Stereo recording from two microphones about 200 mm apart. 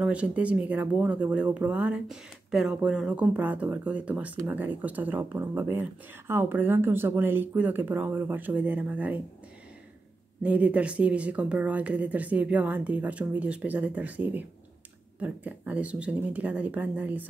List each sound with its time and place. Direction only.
0.0 s speech: 5° right (ahead or behind)
10.4 s speech: 5° right (ahead or behind)